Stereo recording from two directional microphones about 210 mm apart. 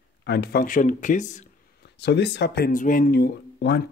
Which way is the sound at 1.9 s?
55° left (ahead or behind).